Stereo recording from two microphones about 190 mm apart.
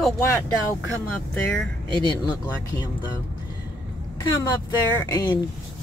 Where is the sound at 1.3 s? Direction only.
5° left (ahead or behind).